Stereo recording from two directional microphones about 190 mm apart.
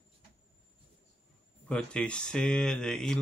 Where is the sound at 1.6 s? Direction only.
5° left (ahead or behind).